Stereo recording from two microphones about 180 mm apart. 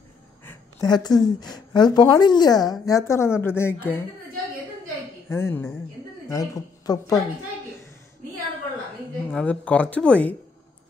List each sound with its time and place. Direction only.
0.5 s a sound: 20° left (ahead or behind)
1.2 s a woman's voice: 20° left (ahead or behind)
5.3 s a woman's voice: 15° left (ahead or behind)
9.3 s speech: 5° left (ahead or behind)